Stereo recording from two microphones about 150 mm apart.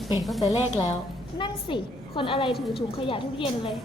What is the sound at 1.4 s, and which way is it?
A woman's voice, 35° left (ahead or behind).